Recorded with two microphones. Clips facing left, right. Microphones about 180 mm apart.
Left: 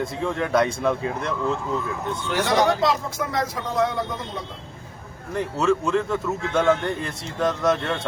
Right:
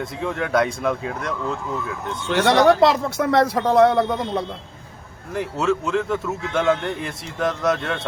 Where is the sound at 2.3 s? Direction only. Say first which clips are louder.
Right 5 dB; 70° right (ahead or behind).